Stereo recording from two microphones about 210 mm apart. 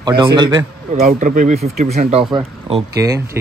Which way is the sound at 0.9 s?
40° right (ahead or behind).